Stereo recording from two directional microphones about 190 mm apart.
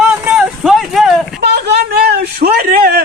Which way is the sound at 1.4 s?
60° right (ahead or behind).